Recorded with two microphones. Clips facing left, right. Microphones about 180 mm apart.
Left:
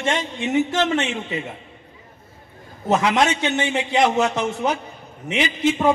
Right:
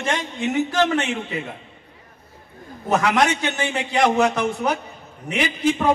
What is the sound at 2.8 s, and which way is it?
A woman's voice, 25° left (ahead or behind).